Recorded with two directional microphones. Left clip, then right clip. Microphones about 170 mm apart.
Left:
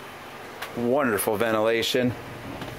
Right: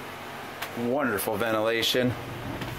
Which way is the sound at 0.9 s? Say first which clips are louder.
Left 4 dB; 40° left (ahead or behind).